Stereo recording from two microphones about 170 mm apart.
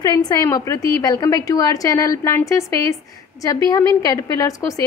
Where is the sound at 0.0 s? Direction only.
20° left (ahead or behind).